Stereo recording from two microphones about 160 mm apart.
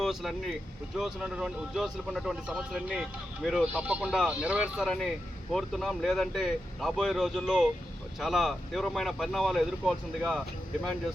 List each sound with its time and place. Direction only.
0.0 s speech: centre (ahead or behind)